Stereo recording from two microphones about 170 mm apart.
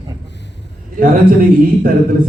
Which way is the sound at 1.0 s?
55° right (ahead or behind).